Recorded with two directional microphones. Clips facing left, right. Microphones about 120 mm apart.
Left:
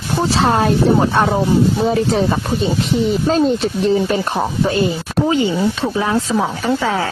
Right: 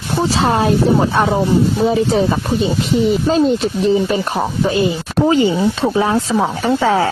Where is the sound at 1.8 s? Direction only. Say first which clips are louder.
Right 1 dB; centre (ahead or behind).